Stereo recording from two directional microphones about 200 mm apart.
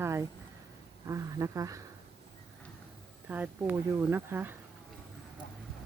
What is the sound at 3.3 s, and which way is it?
Speech, 10° right (ahead or behind).